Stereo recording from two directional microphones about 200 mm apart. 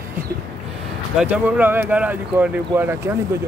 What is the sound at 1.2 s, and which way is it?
Speech, 10° right (ahead or behind).